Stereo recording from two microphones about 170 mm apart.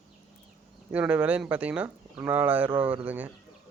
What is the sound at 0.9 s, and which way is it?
Speech, 10° right (ahead or behind).